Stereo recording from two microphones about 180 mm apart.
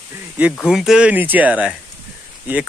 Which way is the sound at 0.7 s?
5° right (ahead or behind).